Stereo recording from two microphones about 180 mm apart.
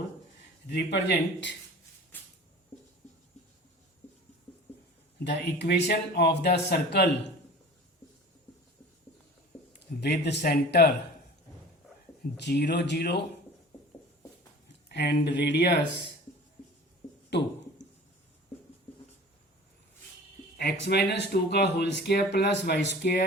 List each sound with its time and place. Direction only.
0.7 s speech: 70° left (ahead or behind)
5.2 s speech: 70° left (ahead or behind)
10.0 s speech: 65° left (ahead or behind)
12.4 s speech: 70° left (ahead or behind)
14.8 s speech: 65° left (ahead or behind)
20.8 s speech: 70° left (ahead or behind)